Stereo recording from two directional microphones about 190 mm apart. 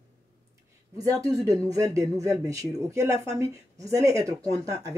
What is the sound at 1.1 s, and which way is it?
Speech, 15° right (ahead or behind).